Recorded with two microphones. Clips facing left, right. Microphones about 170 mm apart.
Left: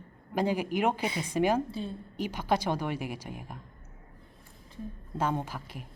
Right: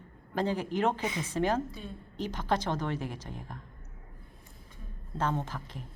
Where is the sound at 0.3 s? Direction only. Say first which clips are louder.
Left 2 dB; 10° left (ahead or behind).